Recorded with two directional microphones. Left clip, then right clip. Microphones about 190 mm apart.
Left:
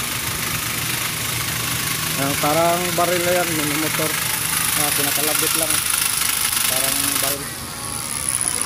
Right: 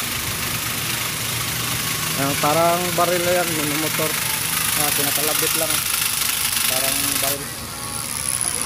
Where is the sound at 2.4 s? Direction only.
10° right (ahead or behind).